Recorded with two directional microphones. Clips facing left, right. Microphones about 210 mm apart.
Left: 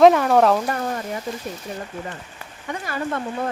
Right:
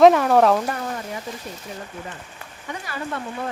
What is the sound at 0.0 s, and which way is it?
Speech, centre (ahead or behind).